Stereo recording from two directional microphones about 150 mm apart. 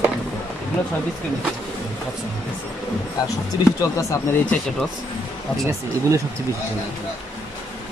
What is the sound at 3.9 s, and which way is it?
Speech, 15° left (ahead or behind).